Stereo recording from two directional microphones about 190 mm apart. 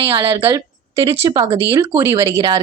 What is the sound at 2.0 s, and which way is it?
Speech, 15° right (ahead or behind).